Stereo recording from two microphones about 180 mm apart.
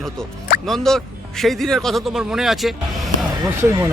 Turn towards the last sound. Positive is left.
turn(degrees=-15)  # may be behind; listen again after turning